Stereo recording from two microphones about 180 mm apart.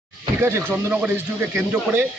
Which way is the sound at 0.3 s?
15° right (ahead or behind).